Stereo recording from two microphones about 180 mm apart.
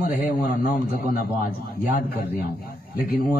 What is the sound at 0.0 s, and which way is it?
Speech, 50° left (ahead or behind).